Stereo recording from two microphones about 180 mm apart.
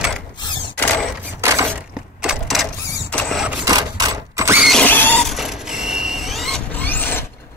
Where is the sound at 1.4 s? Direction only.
15° right (ahead or behind).